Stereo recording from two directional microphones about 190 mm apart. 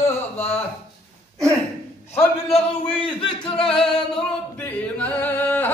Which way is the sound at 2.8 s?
25° left (ahead or behind).